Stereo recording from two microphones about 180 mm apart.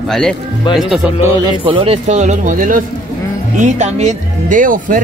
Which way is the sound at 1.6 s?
30° right (ahead or behind).